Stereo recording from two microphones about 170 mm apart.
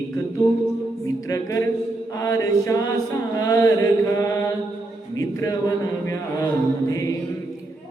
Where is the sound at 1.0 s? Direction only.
20° left (ahead or behind).